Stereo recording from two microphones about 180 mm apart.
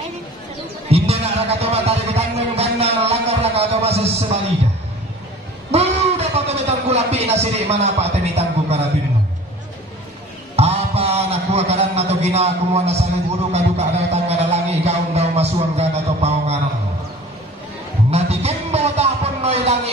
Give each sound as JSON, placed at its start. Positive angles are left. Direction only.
{"t": 0.8, "sound": "music", "side_deg": -35}
{"t": 5.7, "sound": "a sound", "side_deg": -35}
{"t": 10.5, "sound": "a man's voice", "side_deg": -35}
{"t": 18.1, "sound": "music", "side_deg": -35}